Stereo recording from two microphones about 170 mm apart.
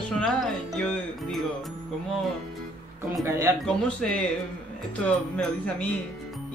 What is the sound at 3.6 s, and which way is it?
Speech, 5° left (ahead or behind).